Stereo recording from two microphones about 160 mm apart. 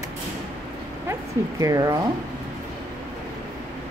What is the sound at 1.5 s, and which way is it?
Speech, 20° right (ahead or behind).